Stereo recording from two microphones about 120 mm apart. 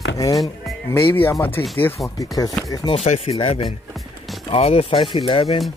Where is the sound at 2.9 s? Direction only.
60° left (ahead or behind).